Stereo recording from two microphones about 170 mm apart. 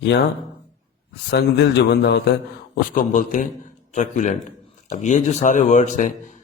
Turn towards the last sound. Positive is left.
turn(degrees=45)  # may be behind; listen again after turning